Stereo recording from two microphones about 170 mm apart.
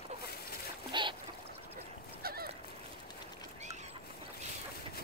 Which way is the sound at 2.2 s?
65° right (ahead or behind).